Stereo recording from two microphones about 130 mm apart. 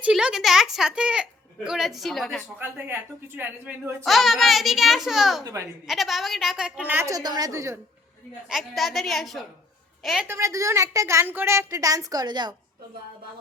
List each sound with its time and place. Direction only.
0.0 s speech: 5° right (ahead or behind)
2.6 s speech: 15° right (ahead or behind)
4.0 s speech: centre (ahead or behind)
5.4 s a woman's voice: 30° right (ahead or behind)
5.9 s speech: centre (ahead or behind)
7.1 s a woman's voice: 30° right (ahead or behind)
8.4 s a woman's voice: centre (ahead or behind)
10.2 s a woman's voice: 20° right (ahead or behind)